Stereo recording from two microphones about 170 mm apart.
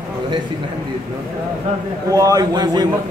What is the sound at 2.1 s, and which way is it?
Speech, 20° right (ahead or behind).